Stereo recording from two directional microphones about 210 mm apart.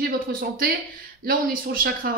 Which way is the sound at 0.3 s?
45° right (ahead or behind).